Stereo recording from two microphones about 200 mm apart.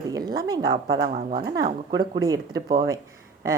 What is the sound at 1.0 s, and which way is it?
Speech, 45° right (ahead or behind).